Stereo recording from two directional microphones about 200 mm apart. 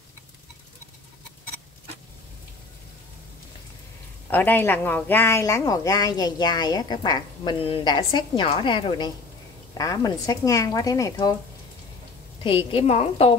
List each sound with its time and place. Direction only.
4.3 s speech: 10° left (ahead or behind)
12.4 s speech: 25° left (ahead or behind)